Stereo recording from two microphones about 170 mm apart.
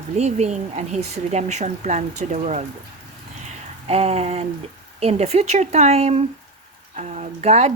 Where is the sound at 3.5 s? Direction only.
35° right (ahead or behind).